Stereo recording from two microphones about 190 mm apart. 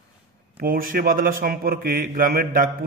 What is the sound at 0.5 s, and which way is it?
A man's voice, 50° right (ahead or behind).